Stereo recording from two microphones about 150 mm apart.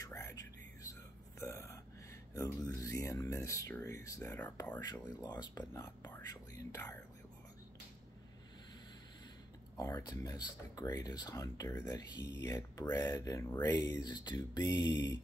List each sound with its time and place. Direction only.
0.0 s whispering: 20° left (ahead or behind)
1.4 s burping: 20° left (ahead or behind)
2.3 s speech: 20° left (ahead or behind)
9.8 s speech: 20° left (ahead or behind)